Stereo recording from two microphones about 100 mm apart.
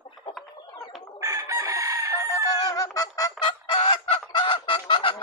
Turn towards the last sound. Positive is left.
turn(degrees=60)  # may be behind; listen again after turning